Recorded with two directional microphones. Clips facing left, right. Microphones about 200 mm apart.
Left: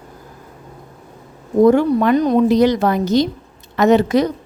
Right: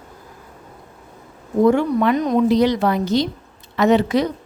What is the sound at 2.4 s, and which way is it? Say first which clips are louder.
A woman's voice: left 2 dB; 45° left (ahead or behind).